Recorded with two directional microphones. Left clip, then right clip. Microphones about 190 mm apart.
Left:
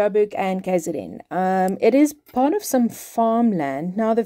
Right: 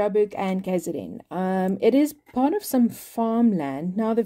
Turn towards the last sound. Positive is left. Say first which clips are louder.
# left 5 dB
turn(degrees=15)  # may be behind; listen again after turning